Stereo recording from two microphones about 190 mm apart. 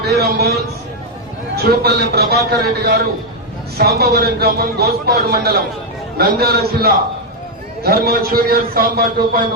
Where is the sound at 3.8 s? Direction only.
55° right (ahead or behind).